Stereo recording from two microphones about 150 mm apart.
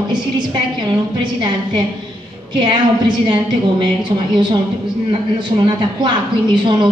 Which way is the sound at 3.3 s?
30° right (ahead or behind).